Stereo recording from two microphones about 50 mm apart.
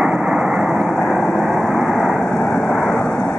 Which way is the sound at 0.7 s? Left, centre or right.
Centre.